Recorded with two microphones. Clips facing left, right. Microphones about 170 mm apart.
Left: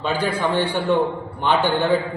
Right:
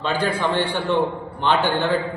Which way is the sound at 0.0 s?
15° left (ahead or behind).